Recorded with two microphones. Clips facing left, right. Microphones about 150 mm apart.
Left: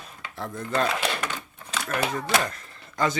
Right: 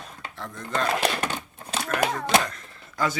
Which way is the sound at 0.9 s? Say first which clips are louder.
Right 3 dB; 35° right (ahead or behind).